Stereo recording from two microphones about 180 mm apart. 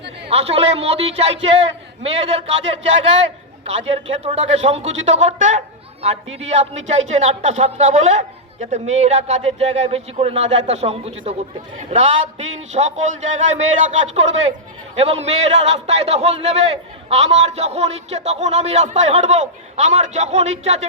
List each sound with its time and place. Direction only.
0.3 s a man's voice: 35° right (ahead or behind)
3.6 s a man's voice: 35° right (ahead or behind)